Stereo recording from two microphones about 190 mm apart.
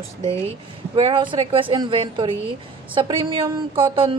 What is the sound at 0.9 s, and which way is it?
Speech, 25° right (ahead or behind).